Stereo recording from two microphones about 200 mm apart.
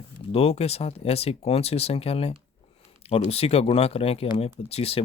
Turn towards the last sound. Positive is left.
turn(degrees=30)  # may be behind; listen again after turning